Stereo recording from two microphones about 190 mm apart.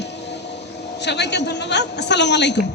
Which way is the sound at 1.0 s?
65° left (ahead or behind).